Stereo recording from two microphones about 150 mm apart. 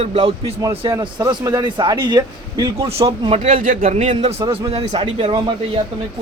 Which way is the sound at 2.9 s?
40° right (ahead or behind).